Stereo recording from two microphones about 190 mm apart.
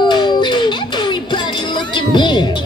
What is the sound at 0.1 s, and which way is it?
Music, 25° left (ahead or behind).